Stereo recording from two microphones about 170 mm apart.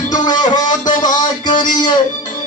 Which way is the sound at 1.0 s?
25° left (ahead or behind).